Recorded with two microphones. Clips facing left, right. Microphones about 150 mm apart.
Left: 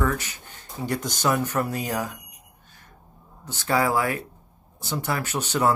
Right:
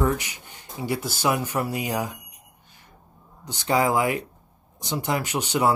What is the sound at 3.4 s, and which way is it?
Speech, 15° right (ahead or behind).